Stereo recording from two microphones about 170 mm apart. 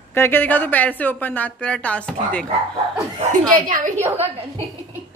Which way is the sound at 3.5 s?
55° right (ahead or behind).